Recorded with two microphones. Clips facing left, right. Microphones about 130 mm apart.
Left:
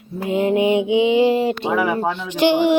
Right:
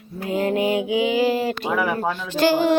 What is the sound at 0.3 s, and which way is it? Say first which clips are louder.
Speech: left 4 dB; 20° left (ahead or behind).